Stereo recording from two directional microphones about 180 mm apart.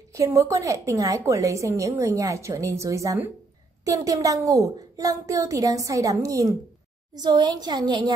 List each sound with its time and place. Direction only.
0.1 s a woman's voice: 15° right (ahead or behind)